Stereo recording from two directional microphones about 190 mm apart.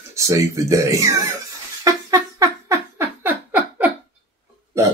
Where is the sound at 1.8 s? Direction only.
20° right (ahead or behind).